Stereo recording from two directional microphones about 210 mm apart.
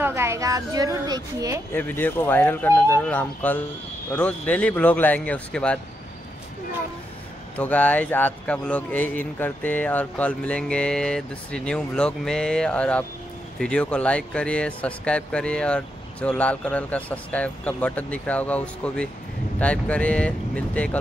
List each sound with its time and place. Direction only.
0.0 s a woman's voice: 15° right (ahead or behind)
1.7 s speech: 10° left (ahead or behind)
7.5 s speech: 5° left (ahead or behind)